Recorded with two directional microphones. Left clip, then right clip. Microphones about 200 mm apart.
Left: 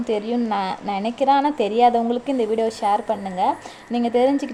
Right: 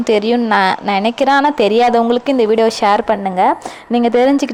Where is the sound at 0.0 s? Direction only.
15° right (ahead or behind).